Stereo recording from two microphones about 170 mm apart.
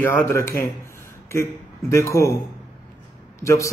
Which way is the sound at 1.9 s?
15° left (ahead or behind).